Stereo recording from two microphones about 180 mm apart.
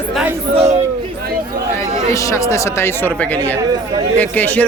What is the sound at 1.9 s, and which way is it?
Speech, 15° left (ahead or behind).